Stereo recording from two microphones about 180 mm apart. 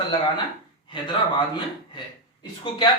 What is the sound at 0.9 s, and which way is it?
A man's voice, 25° left (ahead or behind).